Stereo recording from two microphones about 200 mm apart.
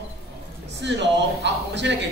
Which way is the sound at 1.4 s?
60° right (ahead or behind).